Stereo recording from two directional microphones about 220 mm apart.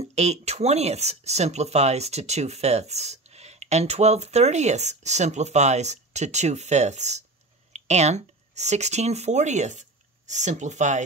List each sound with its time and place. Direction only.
0.0 s speech: 30° right (ahead or behind)